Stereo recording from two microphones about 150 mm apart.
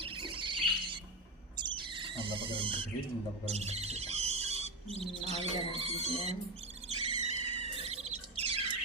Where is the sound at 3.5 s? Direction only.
45° right (ahead or behind).